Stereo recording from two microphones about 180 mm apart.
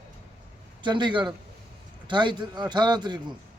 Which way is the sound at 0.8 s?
25° right (ahead or behind).